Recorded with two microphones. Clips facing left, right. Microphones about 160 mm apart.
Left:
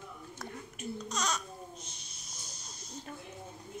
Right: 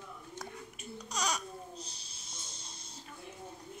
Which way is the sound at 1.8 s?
35° right (ahead or behind).